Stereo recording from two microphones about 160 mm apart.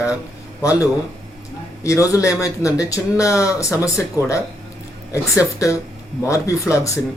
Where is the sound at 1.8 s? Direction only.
20° left (ahead or behind).